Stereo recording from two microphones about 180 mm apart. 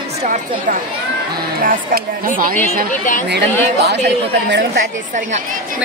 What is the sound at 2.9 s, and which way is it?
Speech, 45° left (ahead or behind).